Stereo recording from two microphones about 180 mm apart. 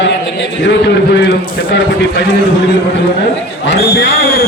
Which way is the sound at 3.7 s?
90° left.